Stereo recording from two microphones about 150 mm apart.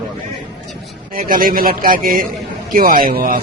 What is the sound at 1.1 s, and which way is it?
A man's voice, 70° right (ahead or behind).